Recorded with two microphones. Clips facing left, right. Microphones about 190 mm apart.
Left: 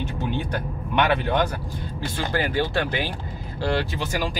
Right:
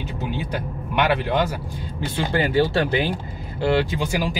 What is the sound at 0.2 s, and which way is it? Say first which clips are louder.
Speech: right 1 dB; 5° right (ahead or behind).